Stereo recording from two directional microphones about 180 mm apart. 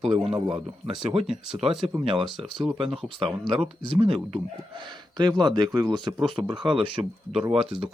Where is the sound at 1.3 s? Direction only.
5° right (ahead or behind).